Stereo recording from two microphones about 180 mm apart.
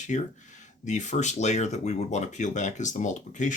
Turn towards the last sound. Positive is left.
turn(degrees=45)  # may be behind; listen again after turning